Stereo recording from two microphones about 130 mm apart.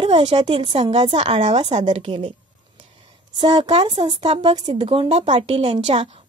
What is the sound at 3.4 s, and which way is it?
A woman's voice, 40° right (ahead or behind).